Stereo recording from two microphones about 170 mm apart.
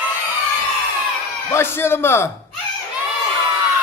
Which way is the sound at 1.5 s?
15° left (ahead or behind).